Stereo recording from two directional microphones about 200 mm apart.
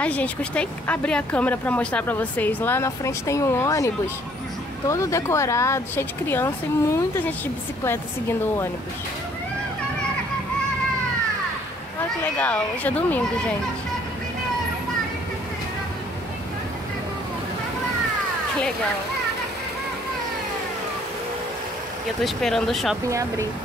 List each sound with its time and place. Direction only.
0.0 s speech: 5° left (ahead or behind)
12.4 s speech: 5° left (ahead or behind)
22.2 s speech: centre (ahead or behind)
23.0 s speech: 15° right (ahead or behind)